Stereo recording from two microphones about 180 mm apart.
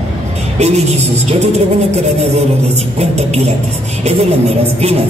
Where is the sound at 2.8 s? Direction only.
35° right (ahead or behind).